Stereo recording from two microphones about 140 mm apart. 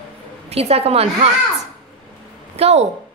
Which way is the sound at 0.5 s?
45° right (ahead or behind).